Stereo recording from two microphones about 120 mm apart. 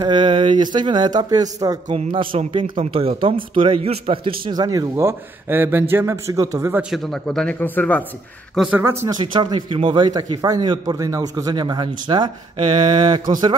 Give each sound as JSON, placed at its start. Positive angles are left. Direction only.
{"t": 0.0, "sound": "a man's voice", "side_deg": -40}
{"t": 2.1, "sound": "a man's voice", "side_deg": -45}
{"t": 6.9, "sound": "speech", "side_deg": 5}
{"t": 8.5, "sound": "a man's voice", "side_deg": -10}
{"t": 9.1, "sound": "a man's voice", "side_deg": -40}